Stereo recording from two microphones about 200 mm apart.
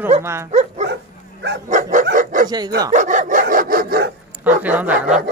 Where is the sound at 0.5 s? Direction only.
35° right (ahead or behind).